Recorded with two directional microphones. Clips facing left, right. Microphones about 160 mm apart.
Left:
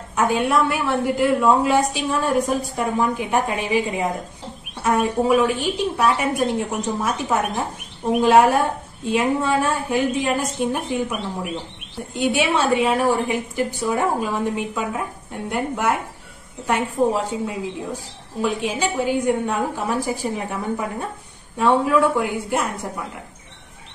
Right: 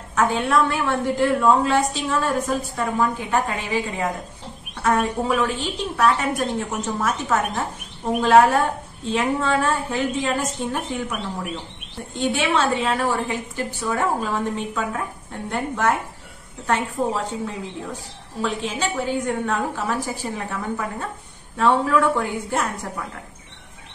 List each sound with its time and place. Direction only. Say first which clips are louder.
0.1 s a woman's voice: left 1 dB; 10° left (ahead or behind)
12.2 s a woman's voice: left 1 dB; 10° left (ahead or behind)